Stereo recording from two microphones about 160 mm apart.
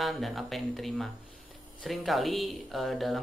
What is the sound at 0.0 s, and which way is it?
Speech, centre (ahead or behind).